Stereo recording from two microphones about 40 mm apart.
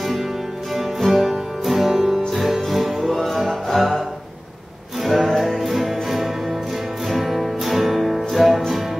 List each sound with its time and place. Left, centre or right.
0.7 s music: centre
5.0 s music: centre